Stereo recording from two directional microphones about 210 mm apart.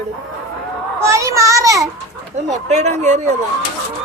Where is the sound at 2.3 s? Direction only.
35° right (ahead or behind).